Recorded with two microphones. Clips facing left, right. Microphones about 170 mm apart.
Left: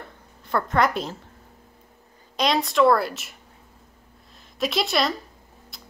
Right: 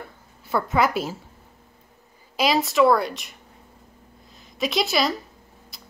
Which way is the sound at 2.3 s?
5° right (ahead or behind).